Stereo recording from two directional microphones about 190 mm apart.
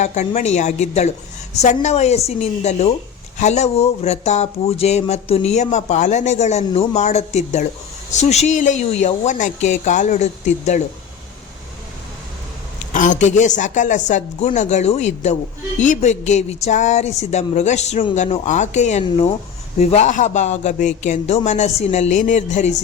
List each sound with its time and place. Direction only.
0.0 s speech: 35° left (ahead or behind)
12.9 s speech: 40° left (ahead or behind)